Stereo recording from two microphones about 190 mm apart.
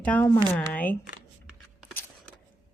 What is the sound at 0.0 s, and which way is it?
Speech, 5° left (ahead or behind).